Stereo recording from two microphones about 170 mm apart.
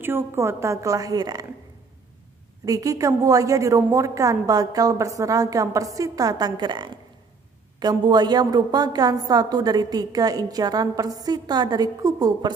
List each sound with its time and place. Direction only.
0.0 s a woman's voice: 15° right (ahead or behind)
2.6 s a woman's voice: 20° right (ahead or behind)